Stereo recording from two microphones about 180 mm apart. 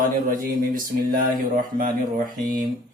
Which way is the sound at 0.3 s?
50° right (ahead or behind).